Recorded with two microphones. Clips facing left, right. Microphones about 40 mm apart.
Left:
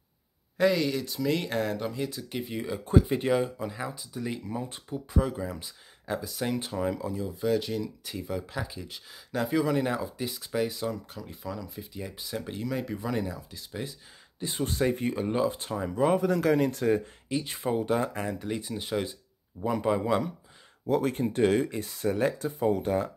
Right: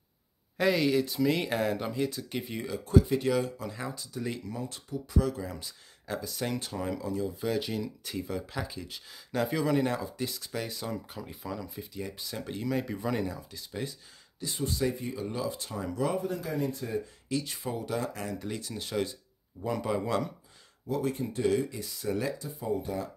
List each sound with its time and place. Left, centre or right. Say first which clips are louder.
0.6 s speech: left 1 dB; centre
2.8 s speech: even; left
5.2 s speech: left 1 dB; centre
14.4 s speech: left 3 dB; left
15.2 s speech: left 5 dB; left
15.7 s speech: left 4 dB; left
16.2 s speech: left 8 dB; left
17.3 s speech: left 4 dB; left
20.8 s speech: left 5 dB; left